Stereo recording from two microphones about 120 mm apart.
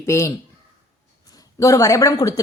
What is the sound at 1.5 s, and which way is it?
Speech, 30° left (ahead or behind).